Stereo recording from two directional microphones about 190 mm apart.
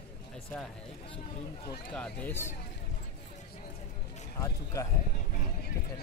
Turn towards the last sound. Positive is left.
turn(degrees=15)  # may be behind; listen again after turning